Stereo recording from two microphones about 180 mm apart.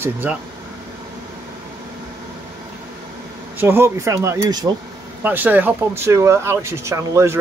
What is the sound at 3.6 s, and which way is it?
Speech, 15° right (ahead or behind).